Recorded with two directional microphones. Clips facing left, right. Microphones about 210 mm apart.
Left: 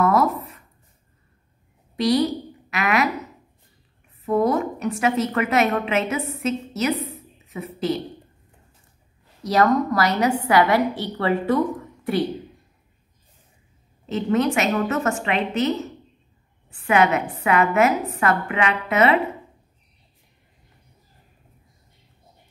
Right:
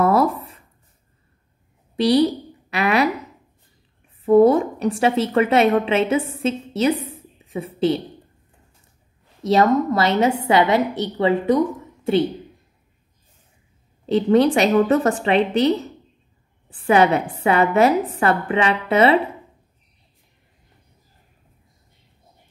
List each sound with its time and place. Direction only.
0.0 s writing: 30° right (ahead or behind)
2.0 s a woman's voice: 30° right (ahead or behind)
4.3 s a woman's voice: 30° right (ahead or behind)
7.1 s a sound: 30° right (ahead or behind)
9.4 s a woman's voice: 25° right (ahead or behind)
14.0 s a woman's voice: 35° right (ahead or behind)